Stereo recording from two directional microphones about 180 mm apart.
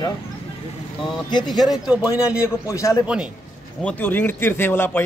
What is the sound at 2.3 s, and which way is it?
Speech, 15° left (ahead or behind).